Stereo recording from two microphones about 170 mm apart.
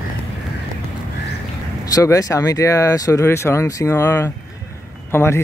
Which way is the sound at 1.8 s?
20° left (ahead or behind).